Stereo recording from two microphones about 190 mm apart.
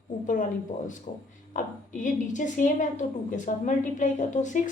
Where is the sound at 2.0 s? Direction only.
40° left (ahead or behind).